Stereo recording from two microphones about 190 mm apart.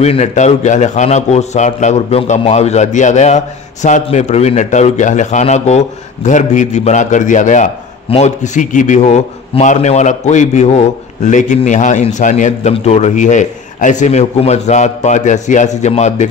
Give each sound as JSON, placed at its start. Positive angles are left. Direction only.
{"t": 0.0, "sound": "a man's voice", "side_deg": 35}